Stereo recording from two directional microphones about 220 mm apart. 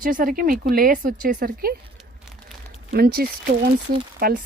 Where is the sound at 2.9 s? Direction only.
45° right (ahead or behind).